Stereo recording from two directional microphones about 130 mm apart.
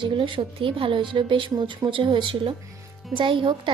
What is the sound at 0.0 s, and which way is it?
A woman's voice, 40° right (ahead or behind).